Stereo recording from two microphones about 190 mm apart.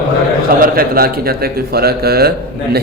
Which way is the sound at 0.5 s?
50° right (ahead or behind).